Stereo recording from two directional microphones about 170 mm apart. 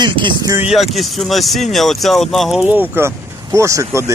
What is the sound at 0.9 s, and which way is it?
Speech, centre (ahead or behind).